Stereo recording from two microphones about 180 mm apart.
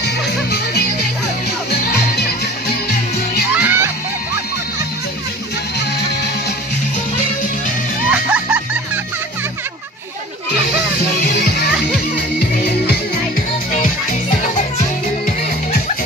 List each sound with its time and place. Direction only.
0.0 s music: 60° left (ahead or behind)
3.5 s music: 10° right (ahead or behind)
8.1 s music: 5° right (ahead or behind)
11.1 s music: 60° left (ahead or behind)